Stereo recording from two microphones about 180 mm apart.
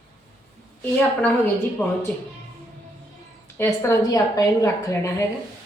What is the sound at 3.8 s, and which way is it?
A woman's voice, 15° left (ahead or behind).